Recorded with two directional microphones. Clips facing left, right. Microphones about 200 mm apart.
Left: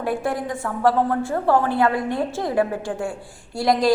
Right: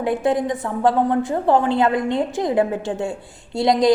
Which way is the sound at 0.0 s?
20° right (ahead or behind).